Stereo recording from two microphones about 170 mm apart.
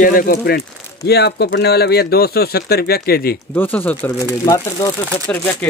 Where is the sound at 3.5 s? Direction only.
10° left (ahead or behind).